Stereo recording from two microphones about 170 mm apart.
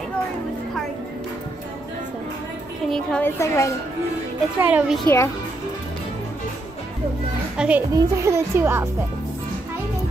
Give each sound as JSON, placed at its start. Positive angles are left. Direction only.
{"t": 2.9, "sound": "a woman's voice", "side_deg": 5}
{"t": 4.6, "sound": "speech", "side_deg": -10}
{"t": 5.0, "sound": "a woman's voice", "side_deg": 15}
{"t": 7.5, "sound": "speech", "side_deg": -5}
{"t": 7.9, "sound": "speech", "side_deg": -15}